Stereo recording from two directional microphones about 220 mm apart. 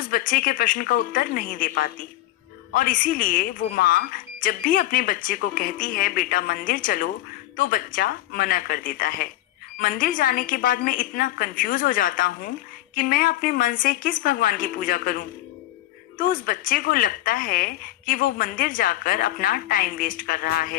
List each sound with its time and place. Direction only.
0.0 s speech: 40° left (ahead or behind)